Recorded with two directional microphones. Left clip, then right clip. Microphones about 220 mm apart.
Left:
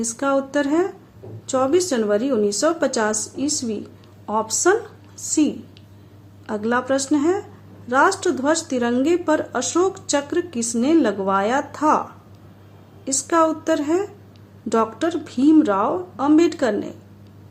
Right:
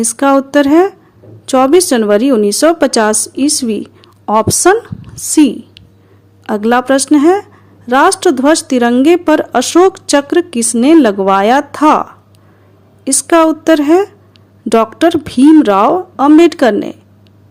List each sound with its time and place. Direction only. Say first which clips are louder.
0.0 s a woman's voice: right 11 dB; 40° right (ahead or behind)
13.1 s speech: right 9 dB; 40° right (ahead or behind)